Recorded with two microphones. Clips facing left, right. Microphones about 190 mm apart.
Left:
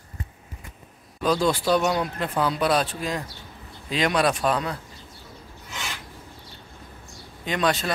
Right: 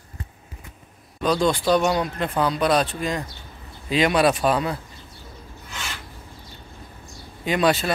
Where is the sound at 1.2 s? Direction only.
5° left (ahead or behind).